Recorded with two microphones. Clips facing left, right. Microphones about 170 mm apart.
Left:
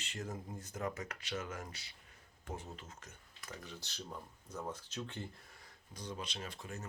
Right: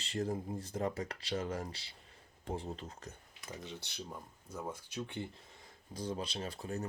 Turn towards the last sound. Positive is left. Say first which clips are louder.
# right 6 dB
turn(degrees=-35)  # may be behind; listen again after turning